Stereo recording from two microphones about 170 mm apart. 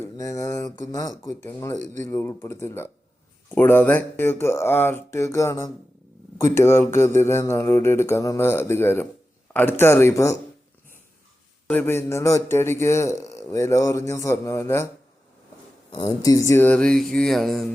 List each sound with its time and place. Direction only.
0.0 s a man's voice: 15° left (ahead or behind)
11.7 s a man's voice: 10° left (ahead or behind)
15.9 s a sound: 20° left (ahead or behind); by 17.7 s centre (ahead or behind)